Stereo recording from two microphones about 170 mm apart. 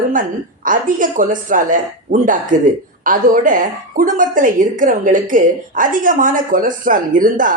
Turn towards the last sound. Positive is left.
turn(degrees=-50)  # may be behind; listen again after turning